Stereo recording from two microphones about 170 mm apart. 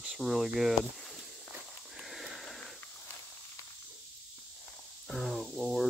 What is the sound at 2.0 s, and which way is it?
Sniff, centre (ahead or behind).